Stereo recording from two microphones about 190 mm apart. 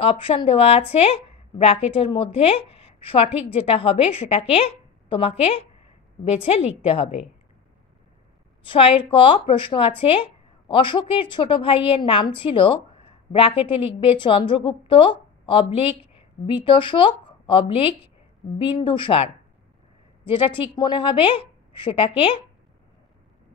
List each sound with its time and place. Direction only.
0.0 s speech: 30° left (ahead or behind)
8.6 s a woman's voice: 30° left (ahead or behind)